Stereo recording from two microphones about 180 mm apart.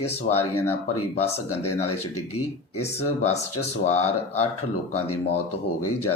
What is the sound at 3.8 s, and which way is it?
Speech, 40° left (ahead or behind).